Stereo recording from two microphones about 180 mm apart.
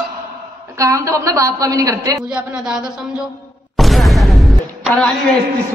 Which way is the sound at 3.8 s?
Centre (ahead or behind).